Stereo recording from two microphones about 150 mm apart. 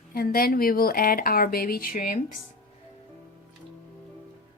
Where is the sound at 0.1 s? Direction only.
85° left.